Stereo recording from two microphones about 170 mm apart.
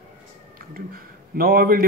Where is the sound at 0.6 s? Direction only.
60° right (ahead or behind).